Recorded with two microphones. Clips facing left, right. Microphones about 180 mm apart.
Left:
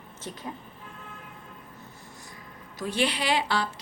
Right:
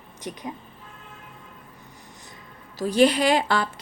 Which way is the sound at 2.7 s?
35° right (ahead or behind).